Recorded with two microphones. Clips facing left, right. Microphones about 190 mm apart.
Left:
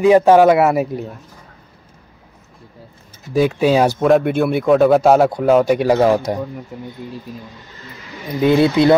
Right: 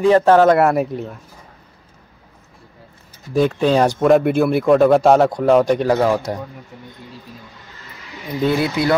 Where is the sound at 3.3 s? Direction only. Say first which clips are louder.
Left 1 dB; 5° left (ahead or behind).